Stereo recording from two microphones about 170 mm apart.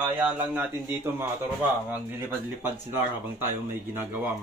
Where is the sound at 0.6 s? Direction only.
15° right (ahead or behind).